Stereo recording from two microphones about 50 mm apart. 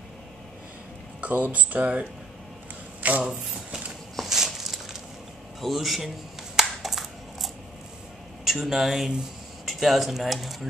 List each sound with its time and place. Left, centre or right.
1.2 s speech: right
4.2 s a sound: centre
8.5 s speech: centre